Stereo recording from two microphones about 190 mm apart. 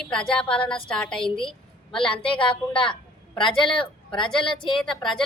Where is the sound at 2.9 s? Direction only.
25° left (ahead or behind).